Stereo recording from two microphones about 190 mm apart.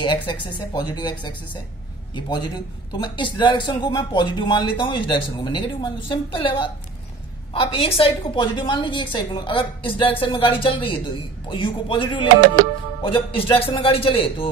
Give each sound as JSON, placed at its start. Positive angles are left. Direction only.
{"t": 0.3, "sound": "a man's voice", "side_deg": 25}
{"t": 2.1, "sound": "a man's voice", "side_deg": 25}